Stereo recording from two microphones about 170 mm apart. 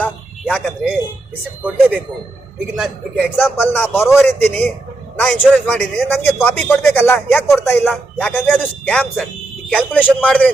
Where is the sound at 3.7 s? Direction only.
15° left (ahead or behind).